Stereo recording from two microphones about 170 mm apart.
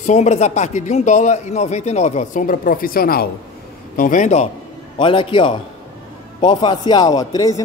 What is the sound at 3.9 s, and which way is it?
Speech, 50° left (ahead or behind).